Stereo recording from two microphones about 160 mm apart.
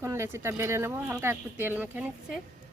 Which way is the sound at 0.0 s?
15° right (ahead or behind).